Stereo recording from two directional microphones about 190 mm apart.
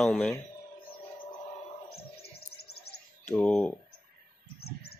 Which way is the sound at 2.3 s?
55° left (ahead or behind).